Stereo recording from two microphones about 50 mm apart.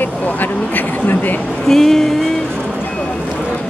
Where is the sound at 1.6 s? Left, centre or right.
Centre.